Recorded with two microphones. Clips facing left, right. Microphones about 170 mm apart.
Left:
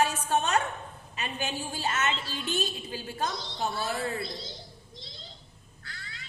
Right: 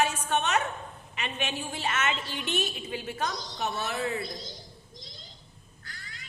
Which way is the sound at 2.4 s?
25° right (ahead or behind).